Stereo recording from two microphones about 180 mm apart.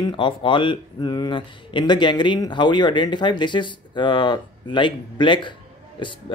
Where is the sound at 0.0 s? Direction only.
25° left (ahead or behind).